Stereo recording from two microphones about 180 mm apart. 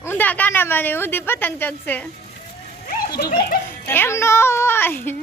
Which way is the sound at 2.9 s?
55° left (ahead or behind).